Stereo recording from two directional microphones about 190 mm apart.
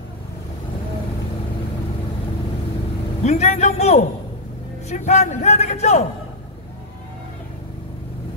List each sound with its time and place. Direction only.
3.3 s a man's voice: 35° left (ahead or behind)